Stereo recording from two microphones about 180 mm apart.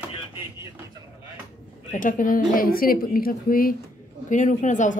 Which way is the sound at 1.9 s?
45° left (ahead or behind).